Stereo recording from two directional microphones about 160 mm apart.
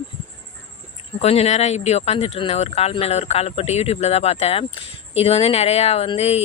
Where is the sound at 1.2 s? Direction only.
40° left (ahead or behind).